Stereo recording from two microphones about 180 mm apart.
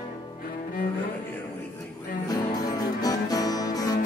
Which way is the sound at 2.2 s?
20° left (ahead or behind).